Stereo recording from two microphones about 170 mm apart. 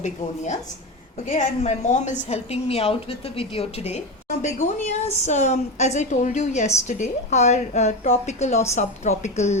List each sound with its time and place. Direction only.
0.0 s a woman's voice: 45° left (ahead or behind)
4.3 s a woman's voice: 50° left (ahead or behind)